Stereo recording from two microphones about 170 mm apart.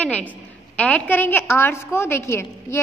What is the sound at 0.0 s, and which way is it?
A woman's voice, 10° left (ahead or behind).